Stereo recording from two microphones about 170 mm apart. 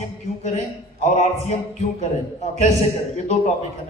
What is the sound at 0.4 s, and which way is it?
Speech, 40° left (ahead or behind).